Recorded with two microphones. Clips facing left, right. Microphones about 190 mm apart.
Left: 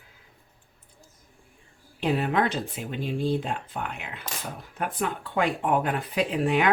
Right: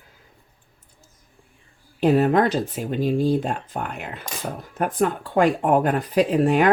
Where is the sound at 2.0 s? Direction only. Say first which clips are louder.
Right 7 dB; 45° right (ahead or behind).